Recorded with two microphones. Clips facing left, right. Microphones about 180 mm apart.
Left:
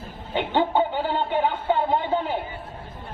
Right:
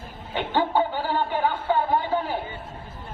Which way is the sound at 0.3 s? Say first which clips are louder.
Left 1 dB; 20° left (ahead or behind).